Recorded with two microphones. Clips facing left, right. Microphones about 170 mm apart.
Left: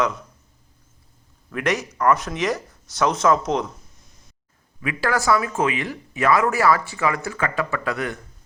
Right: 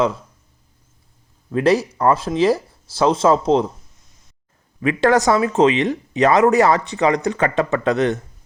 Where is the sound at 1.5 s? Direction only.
30° right (ahead or behind).